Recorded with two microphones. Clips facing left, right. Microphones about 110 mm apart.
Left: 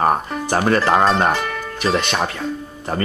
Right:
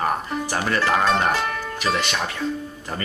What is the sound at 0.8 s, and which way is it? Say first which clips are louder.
Speech: left 2 dB; 35° left (ahead or behind).